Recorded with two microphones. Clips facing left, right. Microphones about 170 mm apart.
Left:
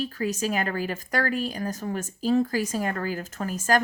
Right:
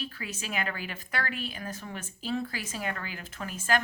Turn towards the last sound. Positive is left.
turn(degrees=40)  # may be behind; listen again after turning